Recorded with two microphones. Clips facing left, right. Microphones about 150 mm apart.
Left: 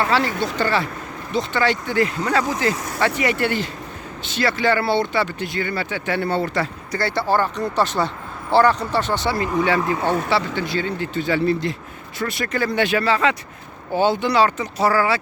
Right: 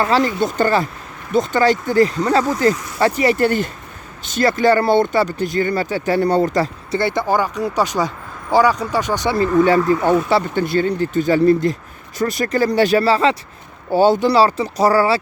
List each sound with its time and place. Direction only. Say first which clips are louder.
0.0 s speech: right 4 dB; 40° right (ahead or behind)
6.9 s speech: right 2 dB; 20° right (ahead or behind)
10.1 s speech: right 5 dB; 45° right (ahead or behind)